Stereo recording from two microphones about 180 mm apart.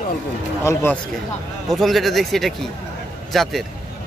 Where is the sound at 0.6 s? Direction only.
15° left (ahead or behind).